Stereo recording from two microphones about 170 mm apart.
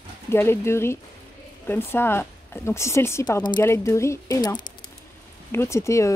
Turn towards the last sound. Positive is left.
turn(degrees=15)  # may be behind; listen again after turning